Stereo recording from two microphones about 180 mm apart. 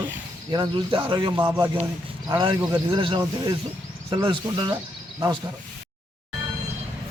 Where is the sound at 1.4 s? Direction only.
10° right (ahead or behind).